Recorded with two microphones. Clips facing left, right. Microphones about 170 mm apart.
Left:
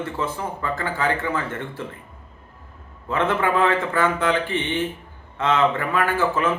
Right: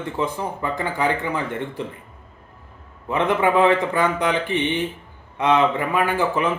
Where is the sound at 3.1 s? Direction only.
15° right (ahead or behind).